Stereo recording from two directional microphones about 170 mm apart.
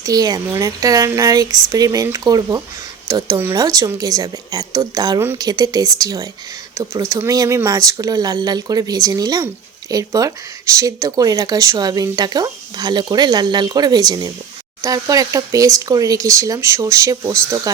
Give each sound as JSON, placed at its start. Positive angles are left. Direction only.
{"t": 0.0, "sound": "speech", "side_deg": -20}